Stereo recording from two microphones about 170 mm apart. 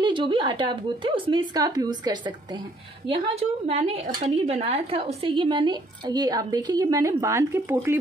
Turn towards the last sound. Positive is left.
turn(degrees=-15)  # may be behind; listen again after turning